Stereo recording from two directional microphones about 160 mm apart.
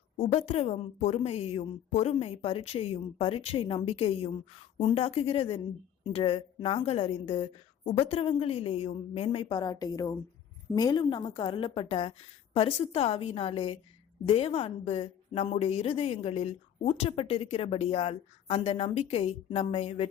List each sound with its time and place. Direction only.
0.2 s a woman's voice: 40° left (ahead or behind)